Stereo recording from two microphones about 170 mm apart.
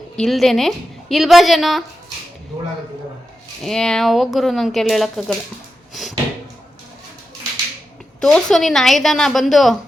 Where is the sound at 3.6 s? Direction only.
5° left (ahead or behind).